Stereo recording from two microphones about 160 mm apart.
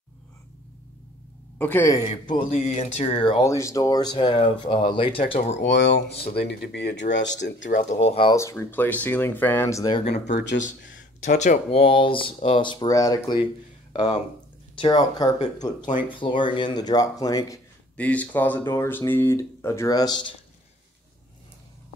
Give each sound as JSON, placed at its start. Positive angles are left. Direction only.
{"t": 1.6, "sound": "speech", "side_deg": 10}
{"t": 2.5, "sound": "speech", "side_deg": 45}
{"t": 3.4, "sound": "speech", "side_deg": 20}
{"t": 5.7, "sound": "speech", "side_deg": 90}
{"t": 7.6, "sound": "speech", "side_deg": 50}
{"t": 8.4, "sound": "speech", "side_deg": 15}
{"t": 9.9, "sound": "speech", "side_deg": 40}
{"t": 10.2, "sound": "speech", "side_deg": 90}
{"t": 11.1, "sound": "speech", "side_deg": 50}
{"t": 11.8, "sound": "speech", "side_deg": 35}
{"t": 14.8, "sound": "speech", "side_deg": 25}
{"t": 17.9, "sound": "speech", "side_deg": 10}